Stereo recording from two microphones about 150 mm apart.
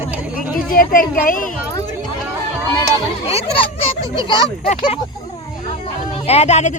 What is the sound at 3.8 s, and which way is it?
Speech, 35° left (ahead or behind).